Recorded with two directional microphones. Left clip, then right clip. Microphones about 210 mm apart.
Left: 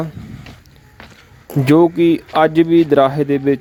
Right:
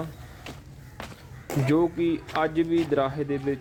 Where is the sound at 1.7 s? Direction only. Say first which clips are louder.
Left 13 dB; 40° left (ahead or behind).